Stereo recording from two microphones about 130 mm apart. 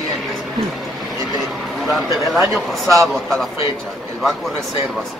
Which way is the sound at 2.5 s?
Centre (ahead or behind).